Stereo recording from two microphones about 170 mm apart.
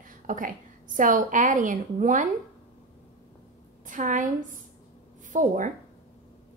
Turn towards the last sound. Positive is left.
turn(degrees=-50)  # may be behind; listen again after turning